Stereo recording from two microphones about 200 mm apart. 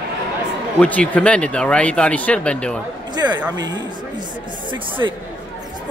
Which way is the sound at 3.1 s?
20° right (ahead or behind).